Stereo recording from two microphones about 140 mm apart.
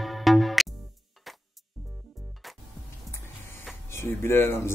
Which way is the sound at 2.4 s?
Centre (ahead or behind).